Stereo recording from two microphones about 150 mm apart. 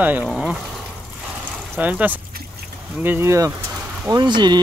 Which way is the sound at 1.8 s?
10° right (ahead or behind).